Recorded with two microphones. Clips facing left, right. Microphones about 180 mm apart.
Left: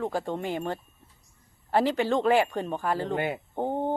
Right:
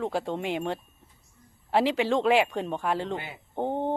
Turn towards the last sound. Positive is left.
turn(degrees=0)  # may be behind; listen again after turning